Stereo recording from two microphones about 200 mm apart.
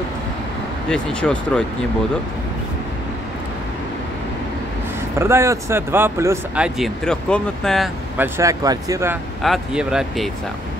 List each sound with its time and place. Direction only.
0.8 s speech: 5° left (ahead or behind)
5.2 s speech: 15° right (ahead or behind); by 7.9 s centre (ahead or behind)
8.2 s speech: 15° right (ahead or behind)
9.4 s speech: centre (ahead or behind)